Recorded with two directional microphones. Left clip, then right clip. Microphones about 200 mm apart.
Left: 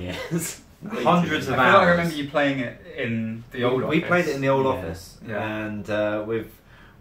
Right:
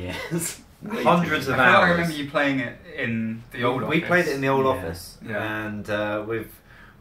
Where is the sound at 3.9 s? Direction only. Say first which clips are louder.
Even; 5° right (ahead or behind).